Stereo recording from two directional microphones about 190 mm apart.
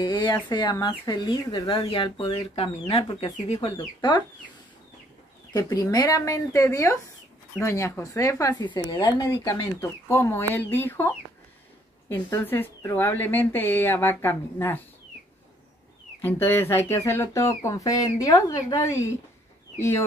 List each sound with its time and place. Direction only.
0.0 s speech: 25° left (ahead or behind)
5.5 s speech: 20° left (ahead or behind)
16.2 s speech: 10° left (ahead or behind)